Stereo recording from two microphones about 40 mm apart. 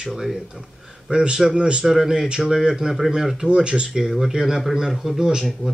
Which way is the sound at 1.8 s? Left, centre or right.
Centre.